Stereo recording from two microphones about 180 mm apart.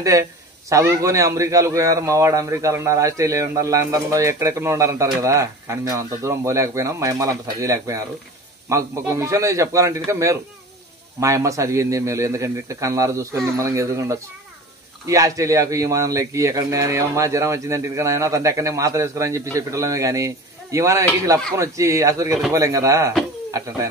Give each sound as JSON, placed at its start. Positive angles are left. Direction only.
{"t": 0.0, "sound": "a man's voice", "side_deg": -15}